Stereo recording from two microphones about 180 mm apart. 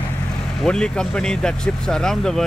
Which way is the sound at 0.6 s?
5° left (ahead or behind).